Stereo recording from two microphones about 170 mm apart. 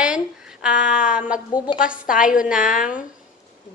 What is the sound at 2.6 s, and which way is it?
Female singing, 50° left (ahead or behind).